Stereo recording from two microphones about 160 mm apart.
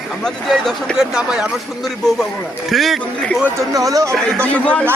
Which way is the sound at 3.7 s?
20° right (ahead or behind).